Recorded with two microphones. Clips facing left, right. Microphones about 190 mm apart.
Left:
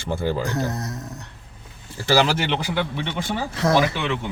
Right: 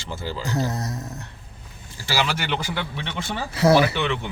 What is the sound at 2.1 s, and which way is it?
Speech, 40° left (ahead or behind).